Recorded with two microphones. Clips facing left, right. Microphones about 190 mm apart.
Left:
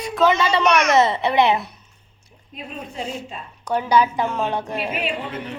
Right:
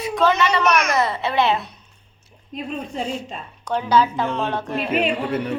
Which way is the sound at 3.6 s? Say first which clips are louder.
Even; 10° left (ahead or behind).